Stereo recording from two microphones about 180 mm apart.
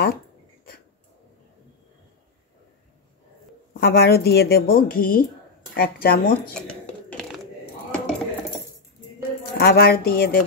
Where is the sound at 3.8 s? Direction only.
60° left (ahead or behind).